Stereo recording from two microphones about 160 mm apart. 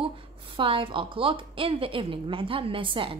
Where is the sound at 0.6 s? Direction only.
35° right (ahead or behind).